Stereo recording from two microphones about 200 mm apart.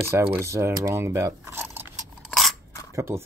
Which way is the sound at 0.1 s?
10° right (ahead or behind).